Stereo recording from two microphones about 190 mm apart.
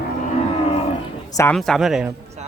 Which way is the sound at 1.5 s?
Centre (ahead or behind).